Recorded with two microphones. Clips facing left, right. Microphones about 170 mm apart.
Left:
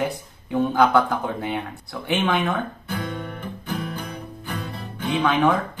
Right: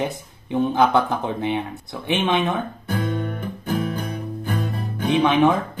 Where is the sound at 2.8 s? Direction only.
45° right (ahead or behind).